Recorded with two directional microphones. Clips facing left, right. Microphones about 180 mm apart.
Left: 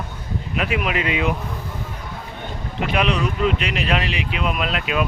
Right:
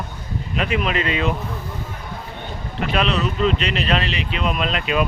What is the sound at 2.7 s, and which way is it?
Speech, 15° left (ahead or behind).